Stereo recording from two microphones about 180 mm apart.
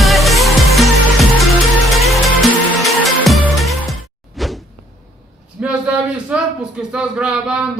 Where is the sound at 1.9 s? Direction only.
Centre (ahead or behind).